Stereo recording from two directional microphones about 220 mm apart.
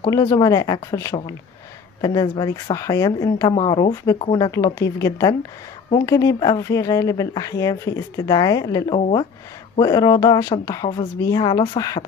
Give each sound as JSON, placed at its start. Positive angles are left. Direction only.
{"t": 0.0, "sound": "speech", "side_deg": 15}